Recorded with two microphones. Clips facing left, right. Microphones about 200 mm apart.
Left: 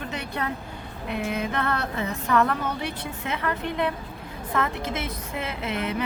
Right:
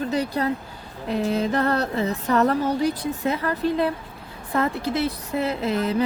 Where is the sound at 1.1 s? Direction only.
35° right (ahead or behind).